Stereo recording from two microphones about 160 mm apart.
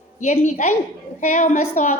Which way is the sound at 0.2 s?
50° left (ahead or behind).